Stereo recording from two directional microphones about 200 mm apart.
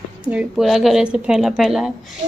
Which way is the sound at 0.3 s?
5° right (ahead or behind).